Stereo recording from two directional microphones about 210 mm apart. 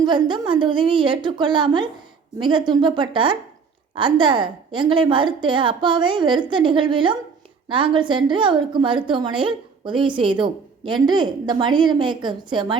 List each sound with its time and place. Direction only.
0.0 s a woman's voice: 20° right (ahead or behind)